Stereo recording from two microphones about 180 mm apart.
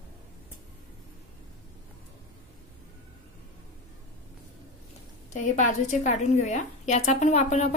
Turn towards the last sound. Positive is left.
turn(degrees=40)  # may be behind; listen again after turning